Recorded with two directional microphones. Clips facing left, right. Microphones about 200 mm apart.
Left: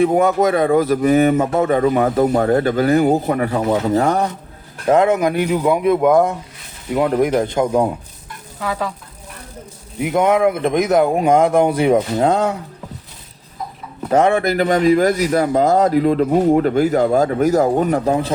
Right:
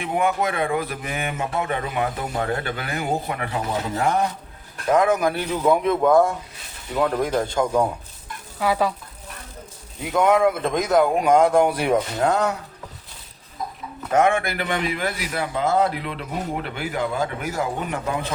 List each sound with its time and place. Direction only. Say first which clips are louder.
0.0 s speech: left 9 dB; 40° left (ahead or behind)
4.9 s speech: left 5 dB; 25° left (ahead or behind)
8.6 s speech: right 2 dB; 10° right (ahead or behind)
10.0 s speech: left 3 dB; 20° left (ahead or behind)
14.1 s speech: left 5 dB; 35° left (ahead or behind)